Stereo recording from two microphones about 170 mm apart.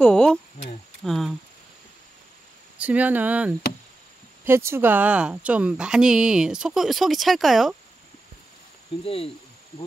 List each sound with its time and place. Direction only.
0.0 s a woman's voice: 5° left (ahead or behind)
2.8 s a woman's voice: 10° right (ahead or behind)
9.0 s speech: 35° left (ahead or behind)